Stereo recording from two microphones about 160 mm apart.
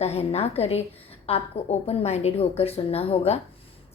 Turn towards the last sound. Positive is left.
turn(degrees=40)  # may be behind; listen again after turning